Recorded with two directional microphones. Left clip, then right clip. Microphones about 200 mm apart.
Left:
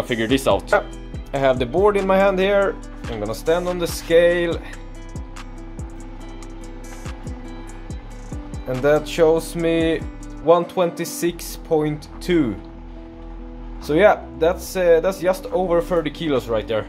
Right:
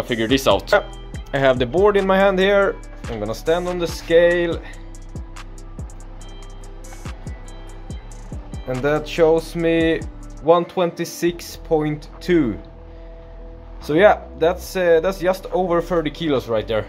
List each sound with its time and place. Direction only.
0.0 s speech: centre (ahead or behind)
1.3 s speech: 15° right (ahead or behind)
3.0 s speech: centre (ahead or behind)
7.9 s music: centre (ahead or behind)
13.8 s speech: 5° right (ahead or behind)